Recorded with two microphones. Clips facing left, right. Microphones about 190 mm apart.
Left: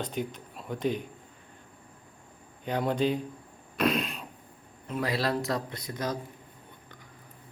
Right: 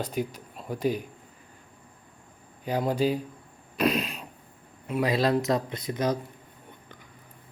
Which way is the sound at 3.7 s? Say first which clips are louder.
Right 2 dB; centre (ahead or behind).